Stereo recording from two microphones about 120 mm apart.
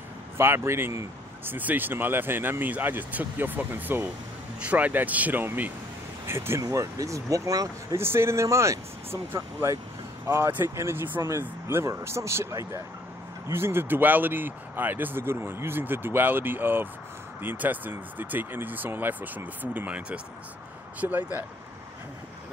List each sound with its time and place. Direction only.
0.4 s speech: 20° right (ahead or behind)